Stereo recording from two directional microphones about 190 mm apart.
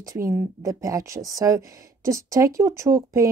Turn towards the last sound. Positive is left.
turn(degrees=-15)  # may be behind; listen again after turning